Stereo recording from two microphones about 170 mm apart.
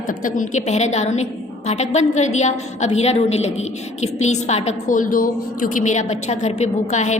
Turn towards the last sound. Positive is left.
turn(degrees=45)  # may be behind; listen again after turning